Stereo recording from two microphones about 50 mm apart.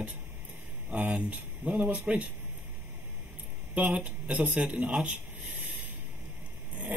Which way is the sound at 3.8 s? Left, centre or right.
Right.